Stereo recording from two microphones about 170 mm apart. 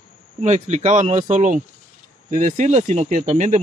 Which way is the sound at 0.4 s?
40° right (ahead or behind).